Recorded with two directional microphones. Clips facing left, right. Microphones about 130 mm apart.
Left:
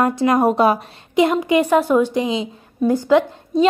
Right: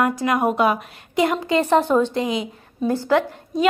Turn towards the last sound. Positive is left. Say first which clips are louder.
# left 4 dB
turn(degrees=15)  # may be behind; listen again after turning